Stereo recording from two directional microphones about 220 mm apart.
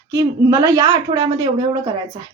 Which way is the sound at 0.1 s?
15° right (ahead or behind).